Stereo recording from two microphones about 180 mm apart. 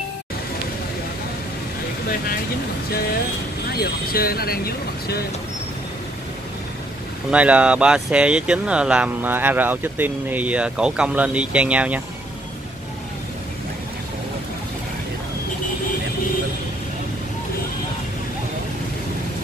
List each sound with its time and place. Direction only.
3.7 s speech: 55° left (ahead or behind)
7.2 s speech: 5° right (ahead or behind)